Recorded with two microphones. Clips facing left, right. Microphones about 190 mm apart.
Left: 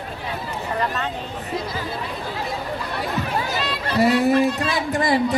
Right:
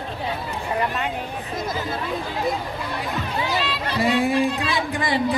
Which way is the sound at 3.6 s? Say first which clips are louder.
Left 3 dB; 40° left (ahead or behind).